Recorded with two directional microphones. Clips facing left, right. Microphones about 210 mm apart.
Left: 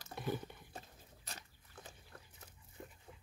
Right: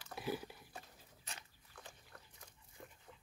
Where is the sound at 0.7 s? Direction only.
40° left (ahead or behind).